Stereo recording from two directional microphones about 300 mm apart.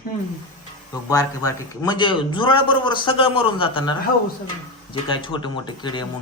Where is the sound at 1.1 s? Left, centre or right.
Centre.